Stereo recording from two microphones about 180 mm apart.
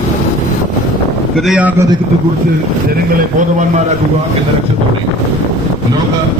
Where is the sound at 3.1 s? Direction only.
45° right (ahead or behind).